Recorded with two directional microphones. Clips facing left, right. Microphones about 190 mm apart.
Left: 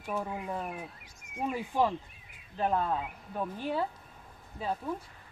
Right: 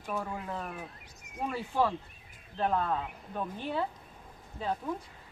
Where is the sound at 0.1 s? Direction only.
15° left (ahead or behind).